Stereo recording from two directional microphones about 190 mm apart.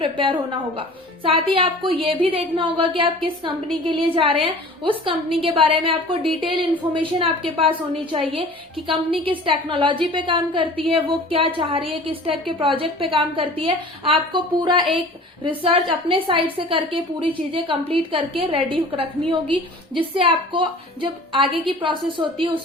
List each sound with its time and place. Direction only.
0.0 s a woman's voice: 25° right (ahead or behind)
8.9 s a woman's voice: 25° right (ahead or behind)